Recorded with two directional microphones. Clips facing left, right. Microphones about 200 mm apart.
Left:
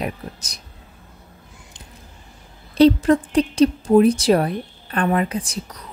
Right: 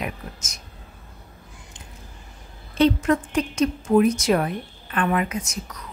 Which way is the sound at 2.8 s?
35° left (ahead or behind).